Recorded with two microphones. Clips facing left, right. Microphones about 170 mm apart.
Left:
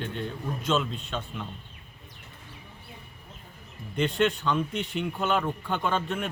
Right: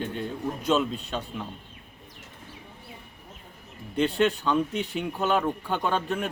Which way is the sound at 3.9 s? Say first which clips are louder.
Right 2 dB; 35° right (ahead or behind).